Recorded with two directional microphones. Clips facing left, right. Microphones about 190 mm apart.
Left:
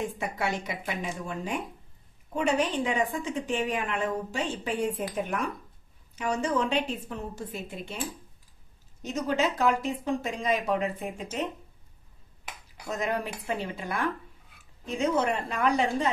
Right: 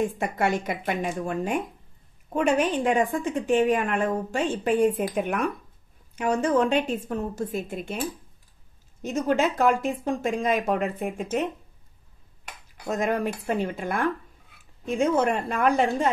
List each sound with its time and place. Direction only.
0.2 s a woman's voice: 50° right (ahead or behind)
6.1 s a woman's voice: 50° right (ahead or behind)
9.0 s a woman's voice: 50° right (ahead or behind)
12.8 s a woman's voice: 50° right (ahead or behind)